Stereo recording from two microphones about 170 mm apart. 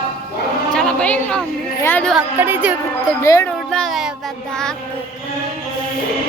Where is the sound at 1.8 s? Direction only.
10° left (ahead or behind).